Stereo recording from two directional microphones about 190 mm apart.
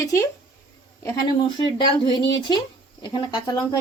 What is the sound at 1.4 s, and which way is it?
Speech, 25° left (ahead or behind).